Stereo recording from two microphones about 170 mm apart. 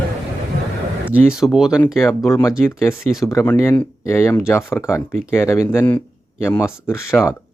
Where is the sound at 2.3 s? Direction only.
15° left (ahead or behind).